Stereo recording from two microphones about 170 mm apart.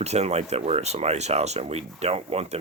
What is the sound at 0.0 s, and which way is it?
Speech, 40° right (ahead or behind).